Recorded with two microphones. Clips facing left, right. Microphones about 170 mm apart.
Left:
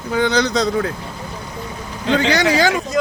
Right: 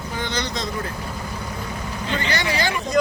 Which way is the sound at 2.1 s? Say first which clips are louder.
Left 9 dB; 90° left.